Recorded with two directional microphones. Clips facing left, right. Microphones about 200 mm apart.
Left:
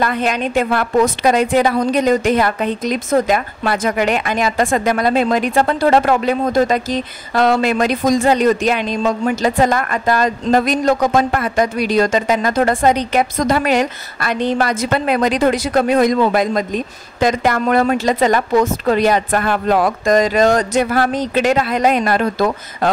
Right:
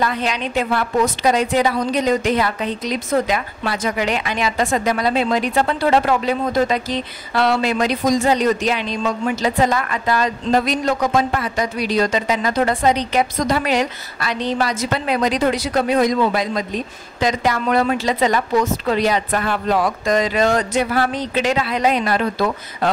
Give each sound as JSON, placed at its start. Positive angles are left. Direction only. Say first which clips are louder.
{"t": 0.0, "sound": "a woman's voice", "louder": "left 3 dB", "side_deg": 55}